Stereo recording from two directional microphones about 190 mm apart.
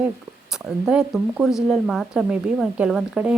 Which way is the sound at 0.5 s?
5° right (ahead or behind).